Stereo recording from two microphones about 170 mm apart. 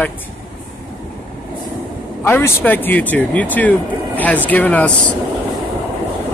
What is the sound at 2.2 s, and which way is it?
Speech, 15° left (ahead or behind).